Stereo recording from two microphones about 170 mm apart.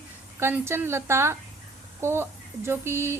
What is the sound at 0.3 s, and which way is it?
Speech, 15° right (ahead or behind).